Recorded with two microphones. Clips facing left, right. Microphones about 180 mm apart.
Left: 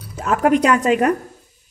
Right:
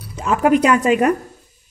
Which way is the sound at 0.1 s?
Centre (ahead or behind).